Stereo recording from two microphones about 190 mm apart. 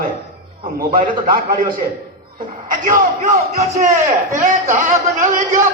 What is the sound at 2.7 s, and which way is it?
A man's voice, 45° right (ahead or behind).